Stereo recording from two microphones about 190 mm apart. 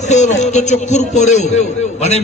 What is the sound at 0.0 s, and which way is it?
A man's voice, 40° left (ahead or behind).